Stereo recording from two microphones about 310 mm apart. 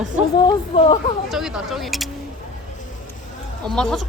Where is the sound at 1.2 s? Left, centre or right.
Centre.